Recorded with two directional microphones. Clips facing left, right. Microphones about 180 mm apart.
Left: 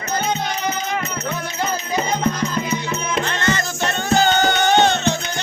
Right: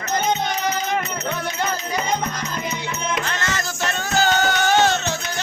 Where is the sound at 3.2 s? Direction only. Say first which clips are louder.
Left 4 dB; centre (ahead or behind).